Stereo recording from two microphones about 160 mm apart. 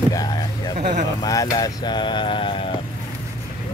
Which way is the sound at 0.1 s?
25° left (ahead or behind).